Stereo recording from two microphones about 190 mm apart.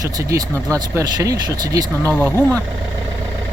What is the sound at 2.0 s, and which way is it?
Speech, 10° left (ahead or behind).